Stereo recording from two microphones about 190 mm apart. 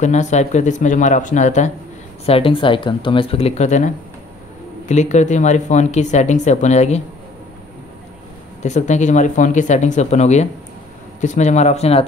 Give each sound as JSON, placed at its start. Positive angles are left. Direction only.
{"t": 0.0, "sound": "speech", "side_deg": 40}
{"t": 8.6, "sound": "speech", "side_deg": 40}